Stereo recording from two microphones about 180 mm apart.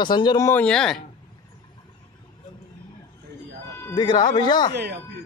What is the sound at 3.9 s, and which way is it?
Speech, 25° left (ahead or behind).